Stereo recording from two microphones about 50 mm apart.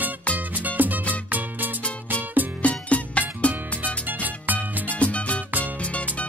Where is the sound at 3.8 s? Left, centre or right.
Right.